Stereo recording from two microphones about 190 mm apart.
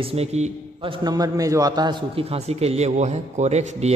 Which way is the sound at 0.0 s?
35° right (ahead or behind).